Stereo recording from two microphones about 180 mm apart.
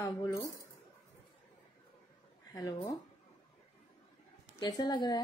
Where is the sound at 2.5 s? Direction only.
20° left (ahead or behind).